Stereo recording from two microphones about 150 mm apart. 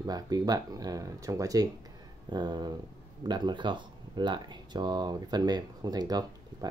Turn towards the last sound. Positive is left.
turn(degrees=-25)  # may be behind; listen again after turning